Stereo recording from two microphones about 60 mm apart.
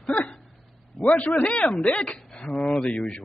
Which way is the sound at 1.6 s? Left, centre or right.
Centre.